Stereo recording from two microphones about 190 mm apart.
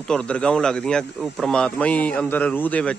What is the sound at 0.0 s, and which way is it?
Speech, 5° left (ahead or behind).